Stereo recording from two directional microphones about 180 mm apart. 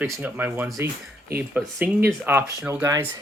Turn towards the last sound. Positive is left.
turn(degrees=-15)  # may be behind; listen again after turning